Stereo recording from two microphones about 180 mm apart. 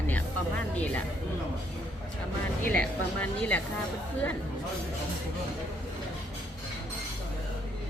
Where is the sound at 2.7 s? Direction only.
10° left (ahead or behind).